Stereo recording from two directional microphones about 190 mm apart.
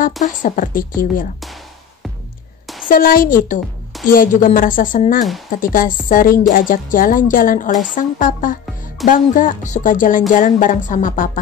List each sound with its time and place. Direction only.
0.2 s a woman's voice: 40° left (ahead or behind)
2.6 s a sound: centre (ahead or behind)
2.9 s a woman's voice: 50° left (ahead or behind)